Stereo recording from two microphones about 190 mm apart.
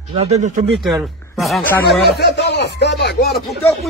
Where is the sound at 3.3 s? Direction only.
Centre (ahead or behind).